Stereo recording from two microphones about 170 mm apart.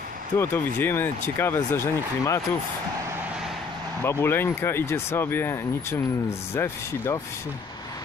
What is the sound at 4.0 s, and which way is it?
Speech, 15° left (ahead or behind).